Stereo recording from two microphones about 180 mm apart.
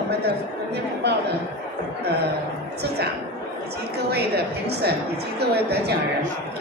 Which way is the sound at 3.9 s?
65° right (ahead or behind).